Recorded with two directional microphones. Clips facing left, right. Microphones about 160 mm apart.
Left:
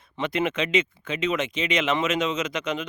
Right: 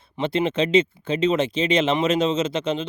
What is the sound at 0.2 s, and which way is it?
Speech, 30° right (ahead or behind).